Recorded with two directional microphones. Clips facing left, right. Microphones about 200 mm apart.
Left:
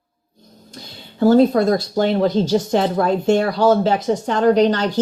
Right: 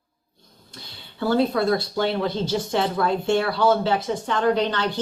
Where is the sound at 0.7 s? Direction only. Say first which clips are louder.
Left 9 dB; 40° left (ahead or behind).